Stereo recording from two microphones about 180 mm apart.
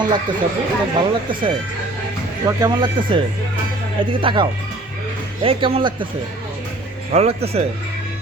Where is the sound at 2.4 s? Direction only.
25° right (ahead or behind).